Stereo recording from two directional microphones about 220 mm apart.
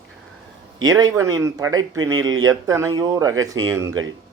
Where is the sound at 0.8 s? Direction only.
15° right (ahead or behind).